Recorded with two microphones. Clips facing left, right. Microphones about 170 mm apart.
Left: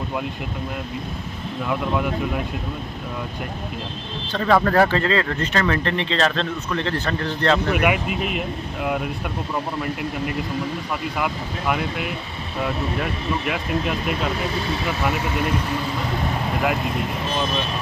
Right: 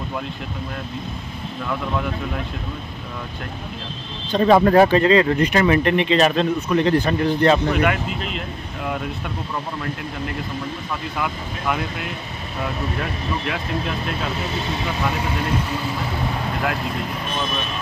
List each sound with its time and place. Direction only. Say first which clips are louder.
4.3 s speech: right 5 dB; 20° right (ahead or behind)
7.7 s speech: even; 15° left (ahead or behind)
11.1 s speech: left 1 dB; 5° left (ahead or behind)
13.5 s speech: left 2 dB; 10° left (ahead or behind)